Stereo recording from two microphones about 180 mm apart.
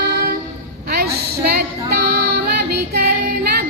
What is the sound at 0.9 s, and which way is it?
Female singing, 60° right (ahead or behind).